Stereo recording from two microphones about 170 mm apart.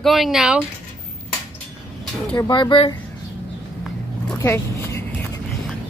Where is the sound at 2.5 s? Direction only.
30° left (ahead or behind).